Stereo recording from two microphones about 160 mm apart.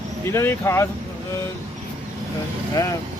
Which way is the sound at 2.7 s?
20° left (ahead or behind).